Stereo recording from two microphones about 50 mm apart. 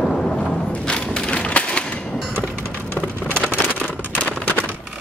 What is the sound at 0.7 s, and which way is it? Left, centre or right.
Splinter, centre.